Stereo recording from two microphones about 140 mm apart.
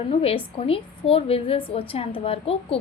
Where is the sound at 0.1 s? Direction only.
45° left (ahead or behind).